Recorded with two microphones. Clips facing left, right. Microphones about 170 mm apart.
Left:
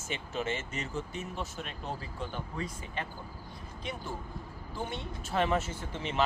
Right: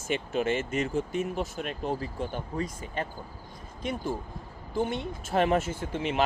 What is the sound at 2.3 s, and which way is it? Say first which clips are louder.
Speech: right 5 dB; 40° right (ahead or behind).